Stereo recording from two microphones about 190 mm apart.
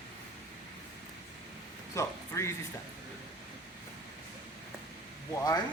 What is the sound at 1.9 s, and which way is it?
Speech, 15° left (ahead or behind).